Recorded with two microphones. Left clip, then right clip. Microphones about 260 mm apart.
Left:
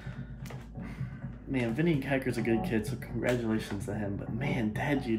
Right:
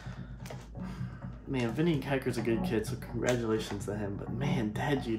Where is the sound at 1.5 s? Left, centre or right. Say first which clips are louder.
Left 1 dB; centre.